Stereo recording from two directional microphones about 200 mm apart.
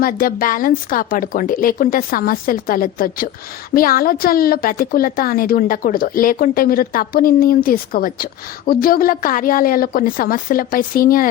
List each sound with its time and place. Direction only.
0.0 s a woman's voice: 45° left (ahead or behind)